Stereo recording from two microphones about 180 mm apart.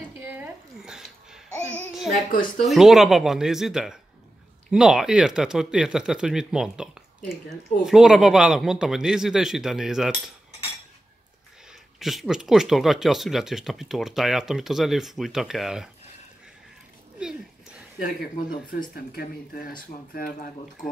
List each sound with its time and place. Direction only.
0.3 s a sound: 5° right (ahead or behind)
1.9 s music: centre (ahead or behind)
2.3 s speech: 50° left (ahead or behind)
2.7 s speech: centre (ahead or behind)
12.0 s speech: centre (ahead or behind)
17.2 s speech: 5° right (ahead or behind)
18.9 s speech: 55° left (ahead or behind)